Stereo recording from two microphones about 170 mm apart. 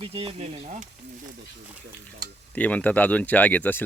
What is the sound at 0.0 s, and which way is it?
Speech, 35° right (ahead or behind).